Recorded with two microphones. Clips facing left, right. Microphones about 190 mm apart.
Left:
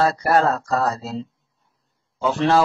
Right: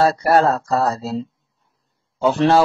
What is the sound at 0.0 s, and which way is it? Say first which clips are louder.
Speech: right 3 dB; 30° right (ahead or behind).